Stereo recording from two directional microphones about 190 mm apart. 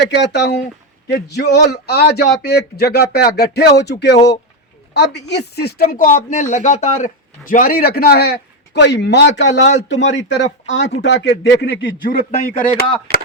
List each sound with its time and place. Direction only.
0.1 s speech: 65° left (ahead or behind); by 12.8 s 50° left (ahead or behind)
13.1 s speech: 55° right (ahead or behind)